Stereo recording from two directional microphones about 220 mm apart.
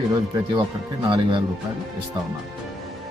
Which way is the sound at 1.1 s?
20° right (ahead or behind).